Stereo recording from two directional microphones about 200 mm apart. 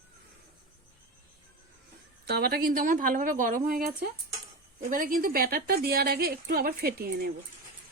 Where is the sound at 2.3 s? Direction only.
50° right (ahead or behind).